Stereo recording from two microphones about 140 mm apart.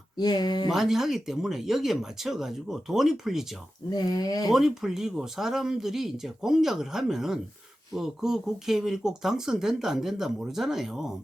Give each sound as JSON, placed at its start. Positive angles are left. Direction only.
{"t": 0.2, "sound": "speech", "side_deg": 30}
{"t": 0.7, "sound": "speech", "side_deg": -5}
{"t": 3.8, "sound": "speech", "side_deg": 30}
{"t": 4.4, "sound": "speech", "side_deg": -5}